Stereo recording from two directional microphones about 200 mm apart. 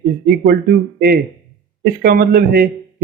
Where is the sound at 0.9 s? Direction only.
50° right (ahead or behind).